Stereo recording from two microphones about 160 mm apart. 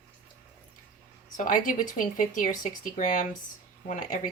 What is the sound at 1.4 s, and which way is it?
Speech, 55° left (ahead or behind).